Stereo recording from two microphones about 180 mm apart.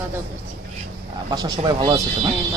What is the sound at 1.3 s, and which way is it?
Speech, 20° right (ahead or behind).